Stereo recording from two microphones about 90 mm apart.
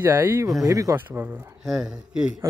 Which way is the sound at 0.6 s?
40° right (ahead or behind).